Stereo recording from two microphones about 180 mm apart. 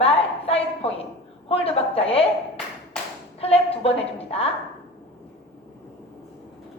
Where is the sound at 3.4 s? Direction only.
35° left (ahead or behind).